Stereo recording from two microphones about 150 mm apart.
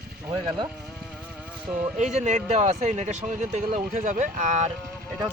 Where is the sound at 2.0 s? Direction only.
50° right (ahead or behind).